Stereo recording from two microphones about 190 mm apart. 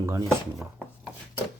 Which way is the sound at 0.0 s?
15° right (ahead or behind).